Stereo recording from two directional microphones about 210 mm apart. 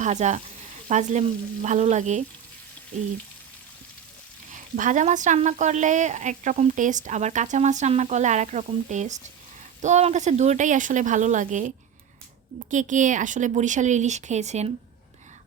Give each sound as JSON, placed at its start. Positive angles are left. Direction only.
{"t": 0.0, "sound": "a woman's voice", "side_deg": -35}
{"t": 4.8, "sound": "a woman's voice", "side_deg": -35}
{"t": 12.7, "sound": "a woman's voice", "side_deg": -35}